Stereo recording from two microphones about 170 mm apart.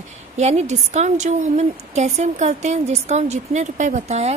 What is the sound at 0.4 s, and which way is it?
A woman's voice, 40° right (ahead or behind).